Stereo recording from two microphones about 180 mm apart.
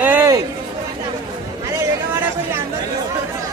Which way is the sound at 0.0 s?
15° right (ahead or behind).